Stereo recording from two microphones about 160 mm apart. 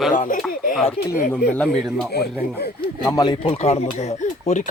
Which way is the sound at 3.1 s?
25° left (ahead or behind).